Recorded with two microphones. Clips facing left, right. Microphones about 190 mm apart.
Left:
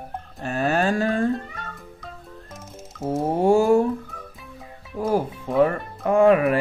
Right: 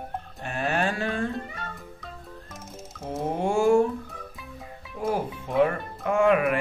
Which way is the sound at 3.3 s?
40° left (ahead or behind).